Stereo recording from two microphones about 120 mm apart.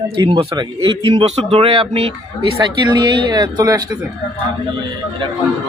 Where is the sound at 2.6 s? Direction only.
40° right (ahead or behind).